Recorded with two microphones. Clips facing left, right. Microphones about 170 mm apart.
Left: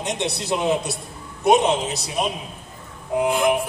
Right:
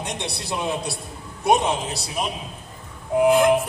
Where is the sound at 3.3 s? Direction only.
Centre (ahead or behind).